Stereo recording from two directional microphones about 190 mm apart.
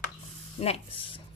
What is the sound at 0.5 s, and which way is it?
Speech, 30° left (ahead or behind).